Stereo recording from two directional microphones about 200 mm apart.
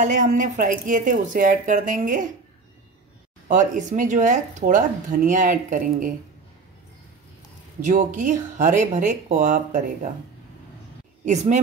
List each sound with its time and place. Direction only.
0.0 s speech: 40° right (ahead or behind)
3.4 s speech: 40° right (ahead or behind)
7.8 s speech: 40° right (ahead or behind)
11.2 s speech: 35° right (ahead or behind)